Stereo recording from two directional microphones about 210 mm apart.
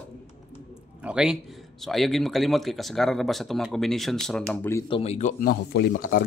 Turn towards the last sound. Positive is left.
turn(degrees=45)  # may be behind; listen again after turning